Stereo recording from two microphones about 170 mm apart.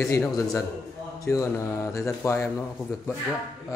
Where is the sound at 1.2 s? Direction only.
20° left (ahead or behind).